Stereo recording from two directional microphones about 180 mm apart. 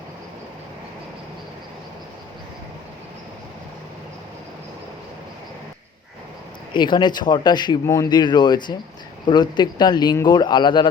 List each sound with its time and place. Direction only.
6.7 s speech: 25° left (ahead or behind)